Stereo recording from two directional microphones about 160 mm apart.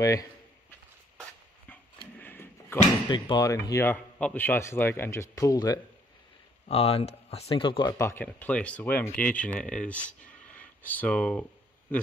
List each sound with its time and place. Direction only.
0.0 s speech: 20° left (ahead or behind)
2.1 s a sound: 15° left (ahead or behind)
3.1 s speech: 25° left (ahead or behind)
6.7 s speech: 40° left (ahead or behind)
8.0 s speech: 15° left (ahead or behind)